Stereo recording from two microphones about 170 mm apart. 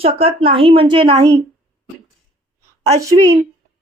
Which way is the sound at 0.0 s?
35° right (ahead or behind).